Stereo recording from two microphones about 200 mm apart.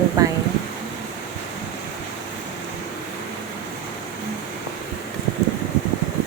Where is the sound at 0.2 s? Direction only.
20° right (ahead or behind).